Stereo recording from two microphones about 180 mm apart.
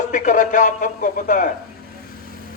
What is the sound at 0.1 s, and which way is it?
A man's voice, 45° left (ahead or behind).